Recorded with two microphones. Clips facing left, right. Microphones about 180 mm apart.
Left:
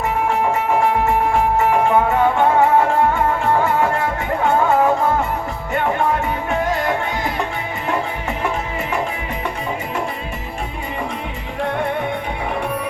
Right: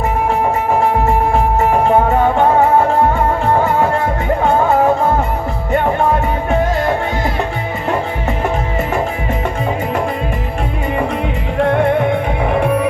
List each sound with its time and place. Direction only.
1.7 s music: 35° right (ahead or behind)